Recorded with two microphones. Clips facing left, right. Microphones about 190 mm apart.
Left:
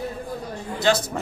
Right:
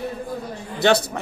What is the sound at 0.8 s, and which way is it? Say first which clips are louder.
Speech: right 3 dB; 60° right (ahead or behind).